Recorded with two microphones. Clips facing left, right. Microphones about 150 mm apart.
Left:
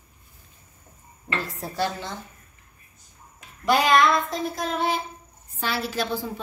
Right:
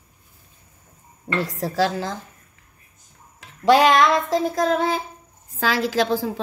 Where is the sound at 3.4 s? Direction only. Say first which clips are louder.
Right 7 dB; 90° right.